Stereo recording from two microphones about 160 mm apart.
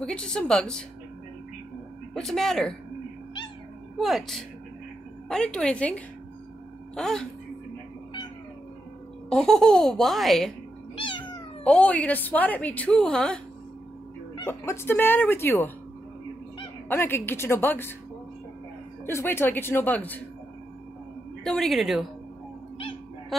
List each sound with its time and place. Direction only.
0.0 s speech: 5° left (ahead or behind)
2.1 s speech: centre (ahead or behind)
4.0 s a woman's voice: centre (ahead or behind)
9.3 s speech: 5° left (ahead or behind)
11.0 s cat: 30° left (ahead or behind)
11.6 s a woman's voice: 10° left (ahead or behind)
14.4 s a woman's voice: 15° left (ahead or behind)
16.9 s a woman's voice: 15° left (ahead or behind)
19.0 s a woman's voice: 15° left (ahead or behind)
21.5 s speech: centre (ahead or behind)